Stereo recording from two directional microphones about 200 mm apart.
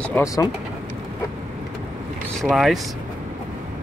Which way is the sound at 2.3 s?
Centre (ahead or behind).